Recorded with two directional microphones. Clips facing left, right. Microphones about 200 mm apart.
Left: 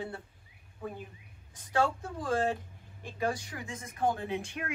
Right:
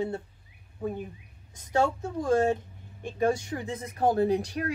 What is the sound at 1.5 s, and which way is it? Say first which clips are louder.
Speech: right 4 dB; 20° right (ahead or behind).